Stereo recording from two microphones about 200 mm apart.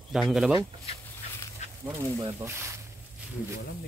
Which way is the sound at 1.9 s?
15° right (ahead or behind).